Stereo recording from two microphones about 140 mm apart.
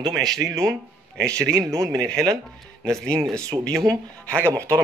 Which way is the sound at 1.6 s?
25° right (ahead or behind).